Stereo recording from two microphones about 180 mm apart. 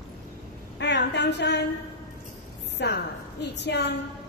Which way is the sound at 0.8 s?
70° left (ahead or behind).